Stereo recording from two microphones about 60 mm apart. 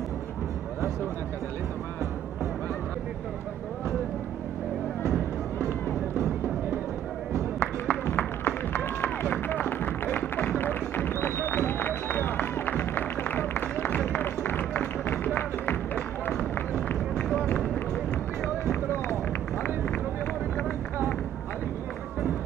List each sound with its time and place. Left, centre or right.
7.6 s music: left
17.4 s run: left